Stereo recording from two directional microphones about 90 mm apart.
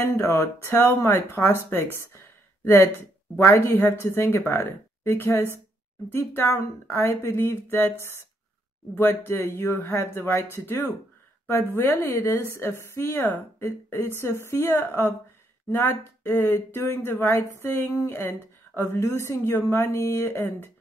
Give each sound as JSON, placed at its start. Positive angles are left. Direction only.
{"t": 0.1, "sound": "speech", "side_deg": 25}
{"t": 4.0, "sound": "speech", "side_deg": 30}
{"t": 8.9, "sound": "speech", "side_deg": 25}